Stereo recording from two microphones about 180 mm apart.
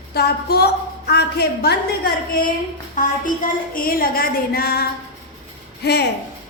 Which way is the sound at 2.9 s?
50° left (ahead or behind).